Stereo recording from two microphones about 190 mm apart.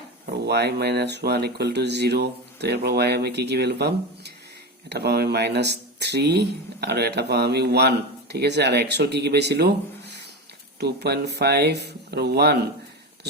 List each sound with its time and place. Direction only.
0.4 s speech: 60° right (ahead or behind)